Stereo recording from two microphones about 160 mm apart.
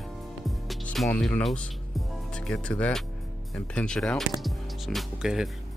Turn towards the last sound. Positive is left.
turn(degrees=-5)  # may be behind; listen again after turning